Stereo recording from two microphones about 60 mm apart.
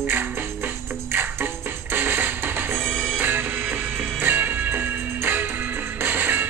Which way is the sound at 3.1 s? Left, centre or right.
Right.